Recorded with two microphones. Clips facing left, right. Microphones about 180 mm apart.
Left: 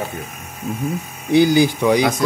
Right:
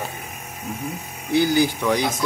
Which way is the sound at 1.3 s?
15° left (ahead or behind).